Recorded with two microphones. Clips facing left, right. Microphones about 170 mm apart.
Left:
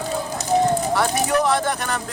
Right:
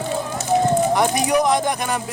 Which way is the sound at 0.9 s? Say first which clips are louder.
Right 2 dB; 15° right (ahead or behind).